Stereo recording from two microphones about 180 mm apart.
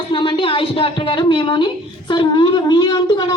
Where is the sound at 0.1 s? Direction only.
30° left (ahead or behind).